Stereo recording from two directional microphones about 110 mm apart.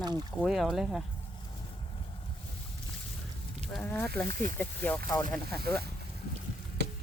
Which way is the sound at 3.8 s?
15° left (ahead or behind).